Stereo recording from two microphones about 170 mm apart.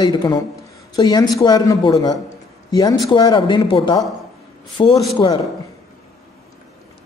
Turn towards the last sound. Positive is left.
turn(degrees=25)  # may be behind; listen again after turning